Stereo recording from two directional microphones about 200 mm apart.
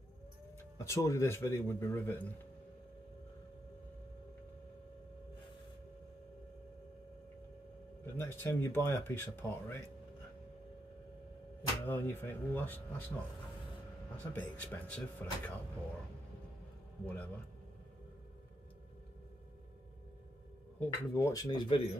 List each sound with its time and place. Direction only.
0.7 s speech: 15° left (ahead or behind)
8.0 s speech: 10° left (ahead or behind)
11.9 s speech: 15° left (ahead or behind)
17.0 s speech: 5° left (ahead or behind)
20.8 s speech: 10° left (ahead or behind)